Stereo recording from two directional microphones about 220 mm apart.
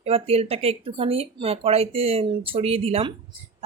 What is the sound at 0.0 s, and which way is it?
Speech, 30° right (ahead or behind).